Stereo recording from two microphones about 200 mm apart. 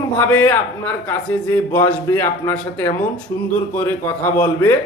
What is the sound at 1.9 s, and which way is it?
Speech, 10° left (ahead or behind).